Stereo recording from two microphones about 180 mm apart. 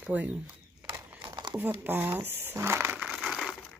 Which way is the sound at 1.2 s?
25° right (ahead or behind).